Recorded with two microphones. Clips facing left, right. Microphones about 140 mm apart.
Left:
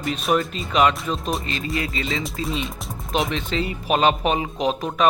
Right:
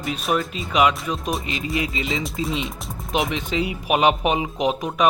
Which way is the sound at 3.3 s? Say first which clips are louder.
Right 1 dB; 10° right (ahead or behind).